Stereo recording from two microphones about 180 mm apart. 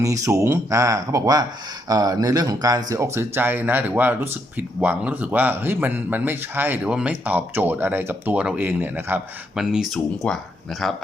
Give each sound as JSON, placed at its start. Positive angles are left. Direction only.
{"t": 0.0, "sound": "speech", "side_deg": -20}